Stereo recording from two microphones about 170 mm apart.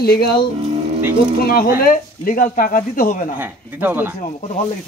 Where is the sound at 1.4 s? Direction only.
60° left (ahead or behind).